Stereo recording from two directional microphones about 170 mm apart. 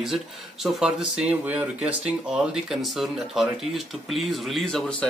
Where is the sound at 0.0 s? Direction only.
Centre (ahead or behind).